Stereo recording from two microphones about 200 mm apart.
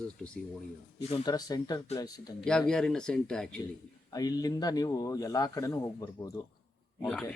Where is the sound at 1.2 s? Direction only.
20° left (ahead or behind).